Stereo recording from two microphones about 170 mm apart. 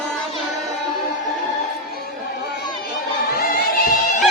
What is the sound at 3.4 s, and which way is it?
Music, 60° left (ahead or behind).